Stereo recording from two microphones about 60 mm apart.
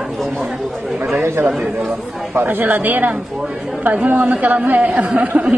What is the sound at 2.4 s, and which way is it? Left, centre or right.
Speech, right.